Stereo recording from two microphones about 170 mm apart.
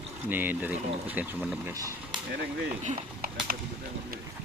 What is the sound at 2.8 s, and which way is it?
Speech, 45° right (ahead or behind).